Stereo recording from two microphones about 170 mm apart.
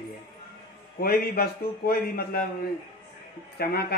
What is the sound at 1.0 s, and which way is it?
Speech, 65° left (ahead or behind).